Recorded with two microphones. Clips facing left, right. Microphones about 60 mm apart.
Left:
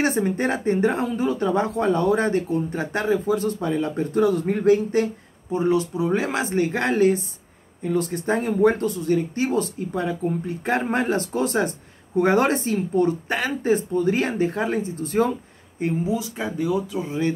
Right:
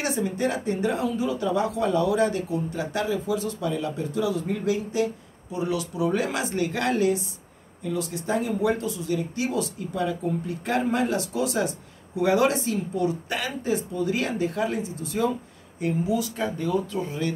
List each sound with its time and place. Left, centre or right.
0.0 s speech: left
5.5 s speech: left
15.8 s speech: left